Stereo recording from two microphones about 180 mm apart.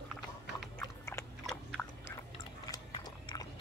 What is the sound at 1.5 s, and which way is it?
Biting, centre (ahead or behind).